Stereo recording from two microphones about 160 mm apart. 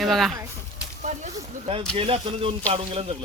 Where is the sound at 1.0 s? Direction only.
50° right (ahead or behind).